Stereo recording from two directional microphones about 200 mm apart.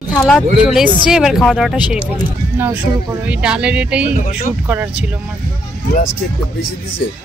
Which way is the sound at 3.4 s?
5° right (ahead or behind).